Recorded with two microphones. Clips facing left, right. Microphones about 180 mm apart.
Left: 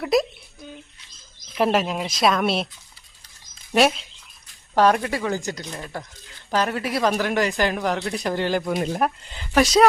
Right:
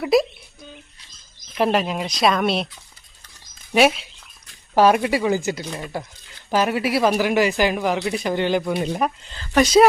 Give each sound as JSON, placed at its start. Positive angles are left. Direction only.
{"t": 0.0, "sound": "speech", "side_deg": 0}
{"t": 1.5, "sound": "speech", "side_deg": 0}
{"t": 3.8, "sound": "speech", "side_deg": -5}
{"t": 9.3, "sound": "speech", "side_deg": 15}
{"t": 9.6, "sound": "speech", "side_deg": 0}